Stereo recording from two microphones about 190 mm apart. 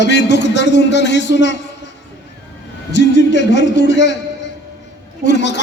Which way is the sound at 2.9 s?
65° left (ahead or behind).